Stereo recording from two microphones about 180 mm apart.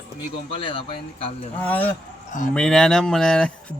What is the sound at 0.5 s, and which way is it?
Speech, 30° left (ahead or behind).